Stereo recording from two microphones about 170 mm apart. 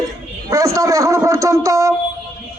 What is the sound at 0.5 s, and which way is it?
Speech, 20° right (ahead or behind).